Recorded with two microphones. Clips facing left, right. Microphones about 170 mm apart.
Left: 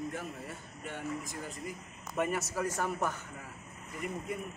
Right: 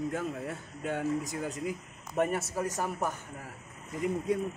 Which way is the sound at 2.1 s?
35° right (ahead or behind).